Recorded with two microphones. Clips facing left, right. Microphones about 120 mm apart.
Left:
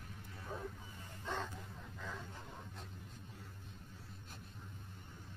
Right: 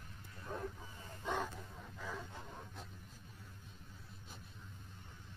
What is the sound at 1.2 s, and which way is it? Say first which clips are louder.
Bow-wow: right 3 dB; 10° right (ahead or behind).